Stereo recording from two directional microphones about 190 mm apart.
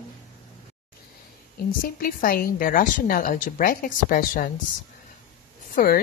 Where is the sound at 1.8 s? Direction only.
50° left (ahead or behind).